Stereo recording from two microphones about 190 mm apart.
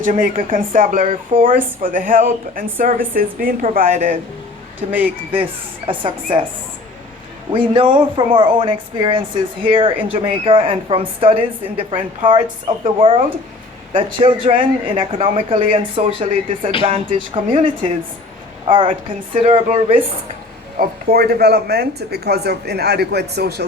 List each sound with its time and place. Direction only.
0.0 s speech: 45° right (ahead or behind)
4.9 s speech: 10° right (ahead or behind)
5.3 s speech: 30° right (ahead or behind)
7.5 s a woman's voice: 25° right (ahead or behind)
20.7 s speech: 55° right (ahead or behind)